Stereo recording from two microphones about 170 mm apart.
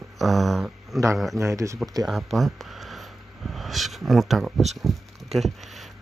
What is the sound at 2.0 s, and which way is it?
Speech, centre (ahead or behind).